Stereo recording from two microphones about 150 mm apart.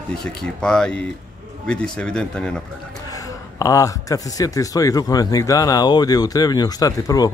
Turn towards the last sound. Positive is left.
turn(degrees=25)  # may be behind; listen again after turning